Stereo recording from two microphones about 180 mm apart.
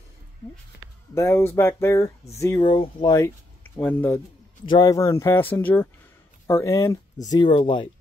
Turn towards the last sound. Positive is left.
turn(degrees=25)  # may be behind; listen again after turning